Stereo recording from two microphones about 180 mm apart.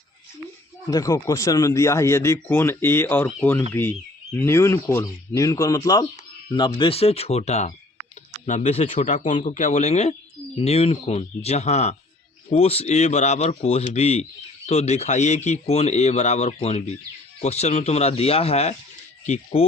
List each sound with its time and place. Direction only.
0.9 s speech: 20° left (ahead or behind)
6.7 s speech: 30° left (ahead or behind)